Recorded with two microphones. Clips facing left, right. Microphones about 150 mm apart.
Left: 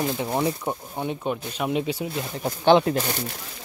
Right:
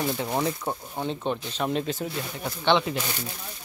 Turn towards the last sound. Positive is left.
turn(degrees=50)  # may be behind; listen again after turning